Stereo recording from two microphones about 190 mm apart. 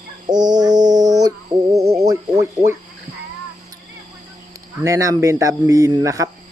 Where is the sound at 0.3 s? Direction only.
20° right (ahead or behind).